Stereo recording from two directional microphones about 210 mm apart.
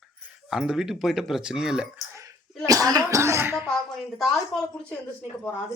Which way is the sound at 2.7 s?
15° right (ahead or behind).